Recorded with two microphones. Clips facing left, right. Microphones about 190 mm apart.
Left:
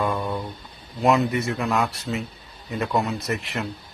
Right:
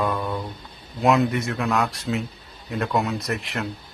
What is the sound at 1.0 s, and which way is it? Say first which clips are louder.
Speech: even; centre (ahead or behind).